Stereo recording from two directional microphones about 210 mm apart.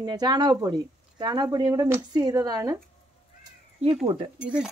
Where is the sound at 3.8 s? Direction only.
25° right (ahead or behind).